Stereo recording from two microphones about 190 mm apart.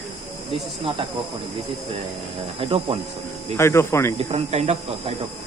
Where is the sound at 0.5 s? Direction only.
25° right (ahead or behind).